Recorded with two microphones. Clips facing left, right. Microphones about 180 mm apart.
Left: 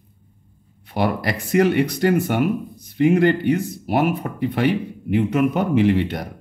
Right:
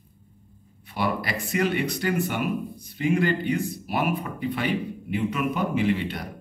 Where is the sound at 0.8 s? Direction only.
55° left (ahead or behind).